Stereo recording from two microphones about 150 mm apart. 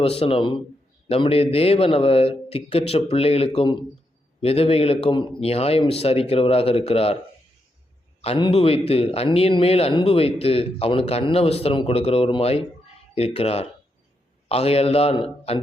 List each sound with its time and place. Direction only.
0.0 s a man's voice: 40° left (ahead or behind)
8.2 s a man's voice: 40° left (ahead or behind)